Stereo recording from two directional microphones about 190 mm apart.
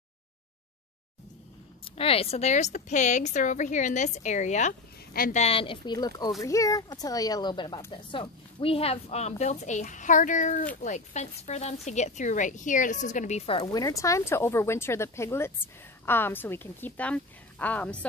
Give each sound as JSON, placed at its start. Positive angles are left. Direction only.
{"t": 1.9, "sound": "speech", "side_deg": 30}
{"t": 5.4, "sound": "a woman's voice", "side_deg": 30}